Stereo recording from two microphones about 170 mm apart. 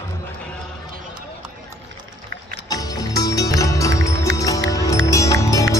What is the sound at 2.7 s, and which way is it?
Music, 20° left (ahead or behind).